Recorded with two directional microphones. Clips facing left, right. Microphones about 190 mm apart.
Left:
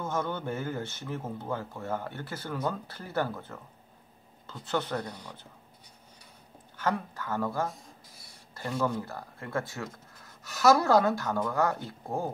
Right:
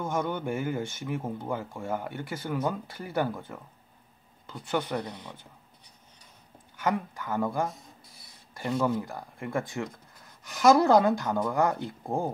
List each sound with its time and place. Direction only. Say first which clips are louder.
0.0 s speech: right 2 dB; 15° right (ahead or behind)
6.8 s speech: right 2 dB; 10° right (ahead or behind)